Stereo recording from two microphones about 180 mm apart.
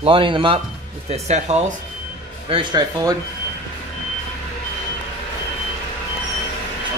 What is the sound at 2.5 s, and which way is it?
Speech, 20° right (ahead or behind).